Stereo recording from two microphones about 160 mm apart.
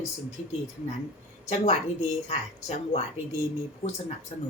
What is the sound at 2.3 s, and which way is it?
Speech, 45° left (ahead or behind).